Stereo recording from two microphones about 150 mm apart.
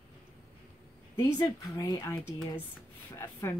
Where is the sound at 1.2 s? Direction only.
20° left (ahead or behind).